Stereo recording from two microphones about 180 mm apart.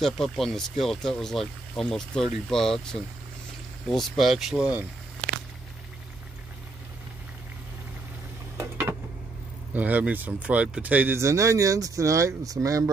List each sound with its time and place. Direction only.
0.0 s speech: centre (ahead or behind)
8.5 s a sound: 15° right (ahead or behind)
9.8 s speech: 10° right (ahead or behind)